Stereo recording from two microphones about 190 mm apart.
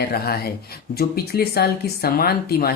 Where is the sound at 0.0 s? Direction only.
55° left (ahead or behind).